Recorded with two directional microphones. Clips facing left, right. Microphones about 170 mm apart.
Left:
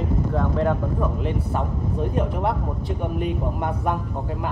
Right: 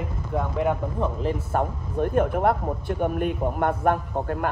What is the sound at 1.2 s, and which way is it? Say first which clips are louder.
Speech: right 1 dB; 40° right (ahead or behind).